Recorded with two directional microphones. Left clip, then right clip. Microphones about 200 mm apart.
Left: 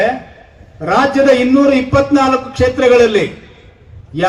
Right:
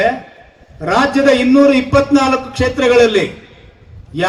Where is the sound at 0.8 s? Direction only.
60° right (ahead or behind).